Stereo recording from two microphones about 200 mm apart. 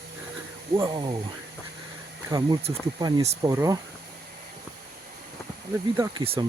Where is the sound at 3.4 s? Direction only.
15° right (ahead or behind).